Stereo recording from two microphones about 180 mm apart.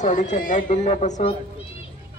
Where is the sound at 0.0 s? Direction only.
45° left (ahead or behind).